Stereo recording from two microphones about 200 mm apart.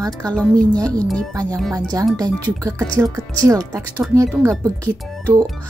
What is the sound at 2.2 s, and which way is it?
Speech, 15° right (ahead or behind).